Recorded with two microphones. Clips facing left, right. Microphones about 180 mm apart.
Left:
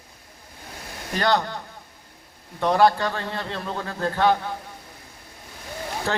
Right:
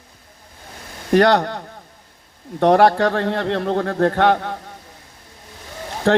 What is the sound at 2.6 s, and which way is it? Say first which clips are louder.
A man's voice: right 5 dB; 70° right (ahead or behind).